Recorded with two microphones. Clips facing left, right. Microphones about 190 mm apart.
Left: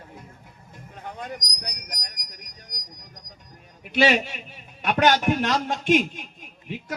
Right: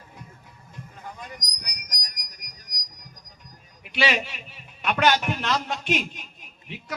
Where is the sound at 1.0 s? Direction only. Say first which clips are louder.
Left 6 dB; 60° left (ahead or behind).